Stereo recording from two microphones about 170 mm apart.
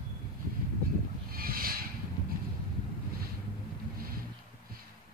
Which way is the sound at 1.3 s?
60° right (ahead or behind).